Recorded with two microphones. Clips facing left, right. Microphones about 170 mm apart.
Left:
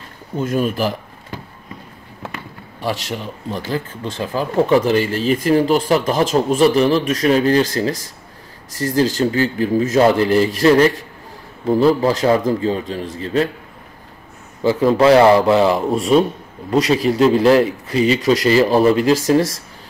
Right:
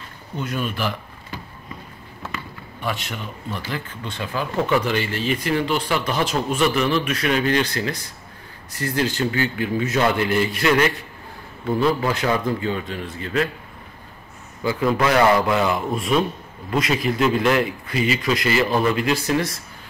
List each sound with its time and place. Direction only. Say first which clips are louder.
0.4 s speech: left 7 dB; 40° left (ahead or behind)
2.8 s speech: left 5 dB; 35° left (ahead or behind)
8.7 s speech: left 6 dB; 40° left (ahead or behind)
14.6 s speech: left 7 dB; 30° left (ahead or behind)